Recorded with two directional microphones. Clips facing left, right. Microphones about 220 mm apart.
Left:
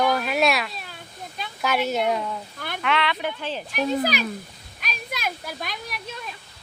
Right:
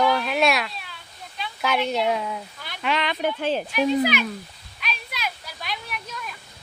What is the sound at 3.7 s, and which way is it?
Speech, 40° left (ahead or behind).